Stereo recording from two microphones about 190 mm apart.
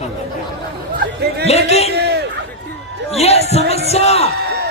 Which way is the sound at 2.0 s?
60° right (ahead or behind).